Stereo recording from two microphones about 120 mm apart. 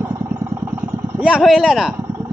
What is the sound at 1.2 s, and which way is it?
Speech, 5° right (ahead or behind).